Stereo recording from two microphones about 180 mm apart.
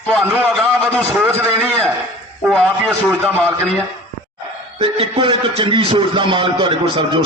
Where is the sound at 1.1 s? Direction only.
15° right (ahead or behind).